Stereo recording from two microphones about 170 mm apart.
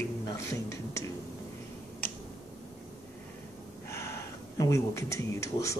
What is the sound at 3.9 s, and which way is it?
Speech, 15° left (ahead or behind).